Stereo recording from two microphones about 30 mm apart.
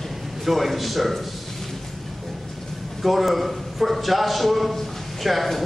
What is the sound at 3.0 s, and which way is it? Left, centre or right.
A man's voice, centre.